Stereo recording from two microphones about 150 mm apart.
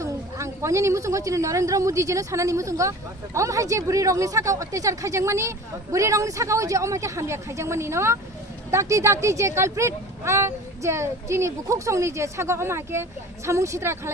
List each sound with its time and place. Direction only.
0.0 s speech: 20° right (ahead or behind)